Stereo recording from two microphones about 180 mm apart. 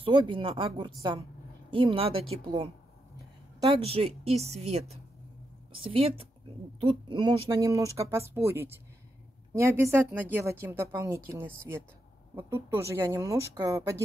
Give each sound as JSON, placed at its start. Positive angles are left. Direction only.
{"t": 0.0, "sound": "a woman's voice", "side_deg": -30}